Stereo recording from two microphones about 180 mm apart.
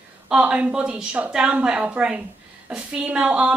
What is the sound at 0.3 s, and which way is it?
A woman's voice, 5° right (ahead or behind).